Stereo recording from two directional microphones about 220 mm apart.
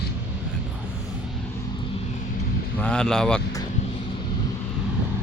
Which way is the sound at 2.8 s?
5° left (ahead or behind).